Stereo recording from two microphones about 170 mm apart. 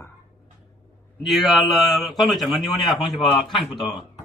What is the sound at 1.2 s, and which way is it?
A man's voice, centre (ahead or behind).